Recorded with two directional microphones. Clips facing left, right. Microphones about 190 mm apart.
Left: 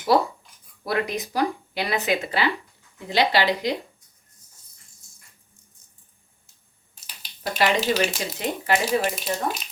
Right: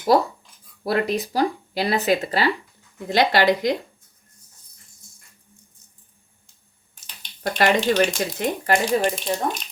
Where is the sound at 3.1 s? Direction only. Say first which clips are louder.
Right 3 dB; 50° right (ahead or behind).